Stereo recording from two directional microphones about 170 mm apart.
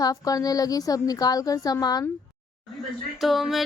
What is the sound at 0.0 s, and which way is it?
A woman's voice, 20° left (ahead or behind).